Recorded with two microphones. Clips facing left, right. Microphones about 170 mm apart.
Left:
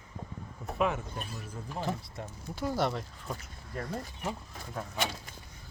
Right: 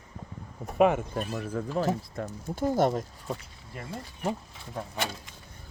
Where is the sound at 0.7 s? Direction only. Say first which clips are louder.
Right 8 dB; 55° right (ahead or behind).